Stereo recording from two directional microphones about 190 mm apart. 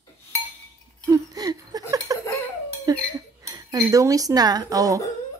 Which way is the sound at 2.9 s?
20° right (ahead or behind).